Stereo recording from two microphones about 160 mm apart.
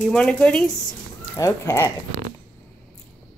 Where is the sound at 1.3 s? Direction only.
20° left (ahead or behind).